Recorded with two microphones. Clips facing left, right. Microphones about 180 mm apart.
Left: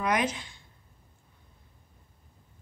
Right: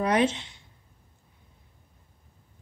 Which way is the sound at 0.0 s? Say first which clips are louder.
Right 4 dB; 30° right (ahead or behind).